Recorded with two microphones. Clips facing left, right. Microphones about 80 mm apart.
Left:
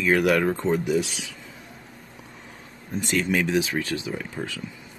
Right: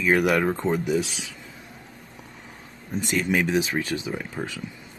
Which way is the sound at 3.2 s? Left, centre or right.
Centre.